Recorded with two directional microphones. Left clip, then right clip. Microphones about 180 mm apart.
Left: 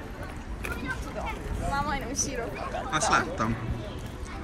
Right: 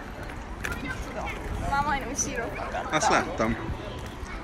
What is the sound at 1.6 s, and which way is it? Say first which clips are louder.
Speech: right 3 dB; centre (ahead or behind).